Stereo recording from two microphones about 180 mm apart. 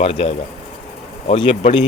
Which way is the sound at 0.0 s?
30° left (ahead or behind).